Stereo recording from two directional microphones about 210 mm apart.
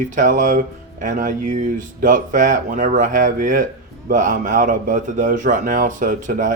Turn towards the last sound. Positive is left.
turn(degrees=-35)  # may be behind; listen again after turning